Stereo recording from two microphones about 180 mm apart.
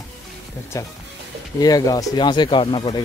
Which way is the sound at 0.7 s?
15° left (ahead or behind).